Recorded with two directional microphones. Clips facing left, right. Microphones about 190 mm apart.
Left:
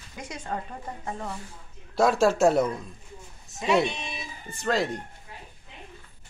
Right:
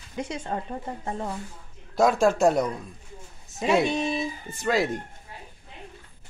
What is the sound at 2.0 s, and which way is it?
Speech, centre (ahead or behind).